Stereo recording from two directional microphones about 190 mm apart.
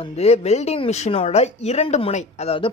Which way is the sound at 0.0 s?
35° left (ahead or behind).